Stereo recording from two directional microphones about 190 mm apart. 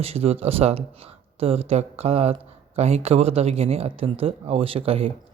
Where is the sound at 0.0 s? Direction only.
30° right (ahead or behind).